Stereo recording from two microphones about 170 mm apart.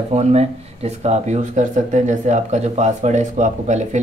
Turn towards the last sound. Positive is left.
turn(degrees=-45)  # may be behind; listen again after turning